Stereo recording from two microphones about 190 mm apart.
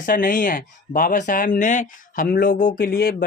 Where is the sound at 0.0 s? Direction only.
45° left (ahead or behind).